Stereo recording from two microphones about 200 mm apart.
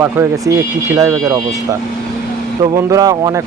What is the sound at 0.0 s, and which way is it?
Speech, 15° right (ahead or behind).